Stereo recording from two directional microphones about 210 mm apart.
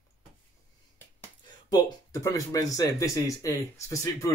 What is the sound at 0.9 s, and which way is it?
Speech, 15° left (ahead or behind).